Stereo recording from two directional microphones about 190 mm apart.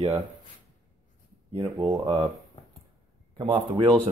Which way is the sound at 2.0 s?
25° right (ahead or behind).